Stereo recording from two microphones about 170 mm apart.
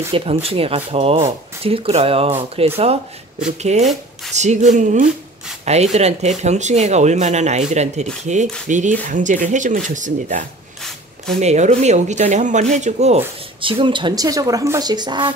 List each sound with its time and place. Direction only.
0.1 s speech: 35° right (ahead or behind)
13.6 s a woman's voice: 30° right (ahead or behind)